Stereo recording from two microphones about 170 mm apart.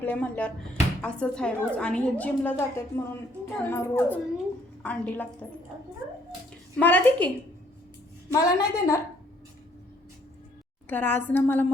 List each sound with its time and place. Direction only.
0.0 s a woman's voice: 10° left (ahead or behind)
6.7 s a woman's voice: 10° left (ahead or behind)
8.3 s a woman's voice: 20° left (ahead or behind)
10.8 s a woman's voice: 10° left (ahead or behind)